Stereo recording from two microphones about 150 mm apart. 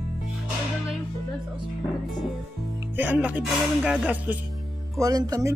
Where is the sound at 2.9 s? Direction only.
10° right (ahead or behind).